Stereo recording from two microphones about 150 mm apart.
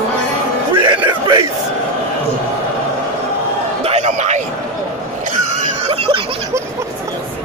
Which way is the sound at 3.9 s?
50° right (ahead or behind).